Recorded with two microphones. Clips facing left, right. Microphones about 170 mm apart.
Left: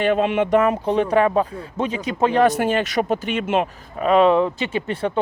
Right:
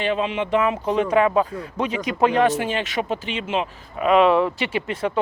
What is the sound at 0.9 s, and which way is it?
Speech, 35° left (ahead or behind).